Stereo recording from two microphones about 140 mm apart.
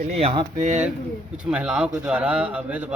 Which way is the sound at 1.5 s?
10° right (ahead or behind).